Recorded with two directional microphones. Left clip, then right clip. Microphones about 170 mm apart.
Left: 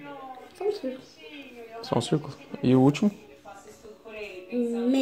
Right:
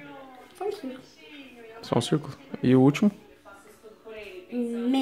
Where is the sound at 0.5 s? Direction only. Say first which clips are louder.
Left 3 dB; 10° right (ahead or behind).